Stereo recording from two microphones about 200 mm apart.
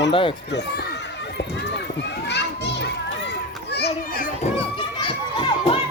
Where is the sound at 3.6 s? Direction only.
55° left (ahead or behind).